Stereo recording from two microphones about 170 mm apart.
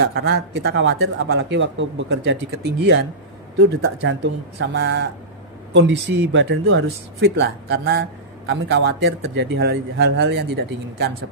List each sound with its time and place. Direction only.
0.0 s speech: 80° right
8.4 s speech: 90° right